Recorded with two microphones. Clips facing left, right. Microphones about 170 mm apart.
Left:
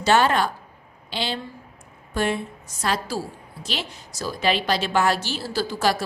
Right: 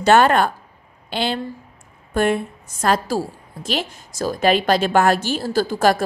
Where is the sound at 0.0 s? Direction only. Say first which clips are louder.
Right 5 dB; 55° right (ahead or behind).